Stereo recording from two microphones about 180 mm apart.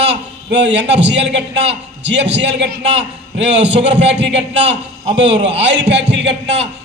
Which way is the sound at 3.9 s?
75° right (ahead or behind).